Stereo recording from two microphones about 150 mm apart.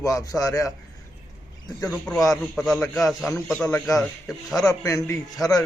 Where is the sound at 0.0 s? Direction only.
20° left (ahead or behind).